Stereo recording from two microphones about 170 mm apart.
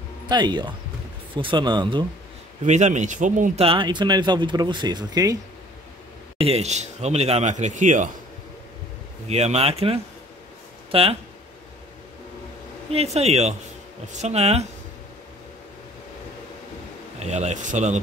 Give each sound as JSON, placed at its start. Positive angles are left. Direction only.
{"t": 0.3, "sound": "speech", "side_deg": -25}
{"t": 2.6, "sound": "speech", "side_deg": -45}
{"t": 3.6, "sound": "speech", "side_deg": -30}
{"t": 6.3, "sound": "speech", "side_deg": -35}
{"t": 9.3, "sound": "speech", "side_deg": -40}
{"t": 12.9, "sound": "speech", "side_deg": -40}
{"t": 17.2, "sound": "speech", "side_deg": -40}